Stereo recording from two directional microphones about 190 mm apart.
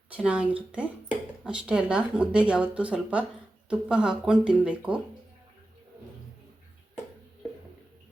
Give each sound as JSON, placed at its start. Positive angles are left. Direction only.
{"t": 0.1, "sound": "speech", "side_deg": -5}